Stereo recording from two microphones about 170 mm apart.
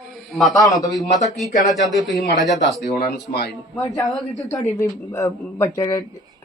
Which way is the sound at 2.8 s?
70° left (ahead or behind).